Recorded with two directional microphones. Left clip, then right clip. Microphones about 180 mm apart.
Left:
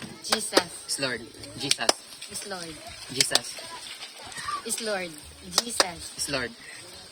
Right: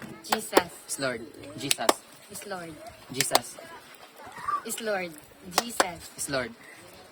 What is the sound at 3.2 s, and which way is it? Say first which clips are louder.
Speech: left 1 dB; 45° right (ahead or behind).